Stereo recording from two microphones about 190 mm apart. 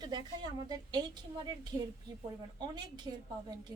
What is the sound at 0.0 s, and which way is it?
A woman's voice, 20° right (ahead or behind).